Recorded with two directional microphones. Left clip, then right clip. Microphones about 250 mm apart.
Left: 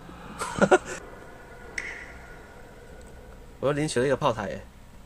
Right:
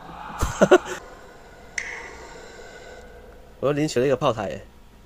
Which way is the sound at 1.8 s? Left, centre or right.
Centre.